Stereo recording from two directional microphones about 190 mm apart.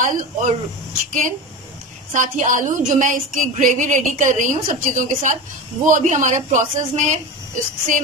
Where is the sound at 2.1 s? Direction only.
40° right (ahead or behind).